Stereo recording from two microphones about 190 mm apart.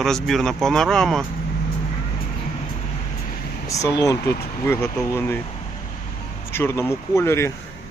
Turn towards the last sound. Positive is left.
turn(degrees=15)  # may be behind; listen again after turning